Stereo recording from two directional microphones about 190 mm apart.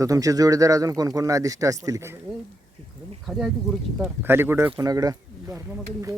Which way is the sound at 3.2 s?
Centre (ahead or behind).